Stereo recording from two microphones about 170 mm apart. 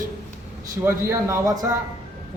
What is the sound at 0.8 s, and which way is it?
Speech, 15° right (ahead or behind).